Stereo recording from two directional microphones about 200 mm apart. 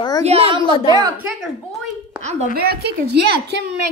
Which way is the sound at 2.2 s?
35° right (ahead or behind).